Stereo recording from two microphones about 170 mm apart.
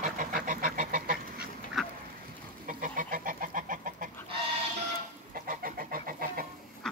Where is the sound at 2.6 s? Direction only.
50° right (ahead or behind).